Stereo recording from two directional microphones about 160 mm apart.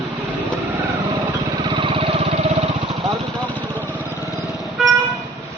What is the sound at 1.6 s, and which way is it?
Vehicle, 30° right (ahead or behind).